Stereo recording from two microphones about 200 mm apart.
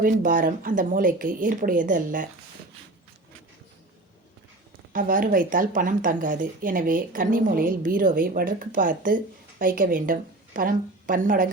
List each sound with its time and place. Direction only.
0.0 s speech: 40° right (ahead or behind)
4.9 s a woman's voice: 40° right (ahead or behind)